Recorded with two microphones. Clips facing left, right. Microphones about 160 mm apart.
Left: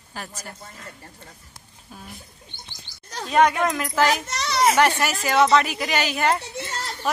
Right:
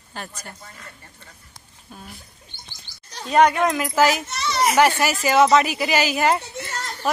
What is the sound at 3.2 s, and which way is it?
A woman's voice, centre (ahead or behind).